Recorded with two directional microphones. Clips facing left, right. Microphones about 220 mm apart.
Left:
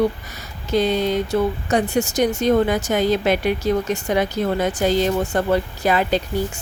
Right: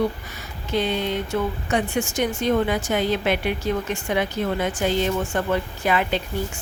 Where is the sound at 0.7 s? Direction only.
40° left (ahead or behind).